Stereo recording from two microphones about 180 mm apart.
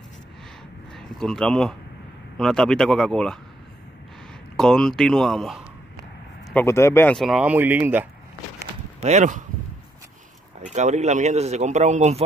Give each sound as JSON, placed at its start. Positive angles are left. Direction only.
{"t": 0.9, "sound": "speech", "side_deg": 5}
{"t": 4.6, "sound": "speech", "side_deg": 5}
{"t": 6.5, "sound": "speech", "side_deg": 15}
{"t": 7.2, "sound": "speech", "side_deg": 0}
{"t": 9.0, "sound": "speech", "side_deg": -40}
{"t": 10.7, "sound": "speech", "side_deg": -40}